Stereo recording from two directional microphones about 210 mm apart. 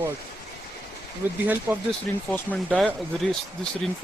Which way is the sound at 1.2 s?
10° right (ahead or behind).